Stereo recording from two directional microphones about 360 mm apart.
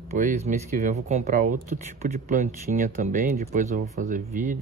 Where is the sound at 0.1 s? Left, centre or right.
Centre.